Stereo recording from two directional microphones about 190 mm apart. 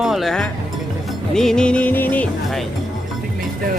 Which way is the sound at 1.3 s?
5° left (ahead or behind).